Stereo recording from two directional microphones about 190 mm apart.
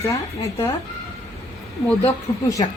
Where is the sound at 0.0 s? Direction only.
15° left (ahead or behind).